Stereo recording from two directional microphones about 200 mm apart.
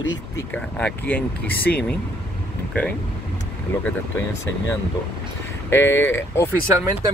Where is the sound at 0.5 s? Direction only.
5° left (ahead or behind).